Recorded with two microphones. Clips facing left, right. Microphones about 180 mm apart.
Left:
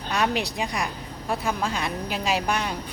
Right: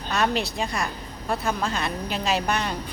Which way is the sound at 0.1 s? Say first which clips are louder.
Right 1 dB; 15° left (ahead or behind).